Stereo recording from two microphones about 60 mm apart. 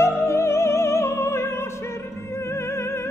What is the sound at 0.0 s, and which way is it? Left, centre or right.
Music, left.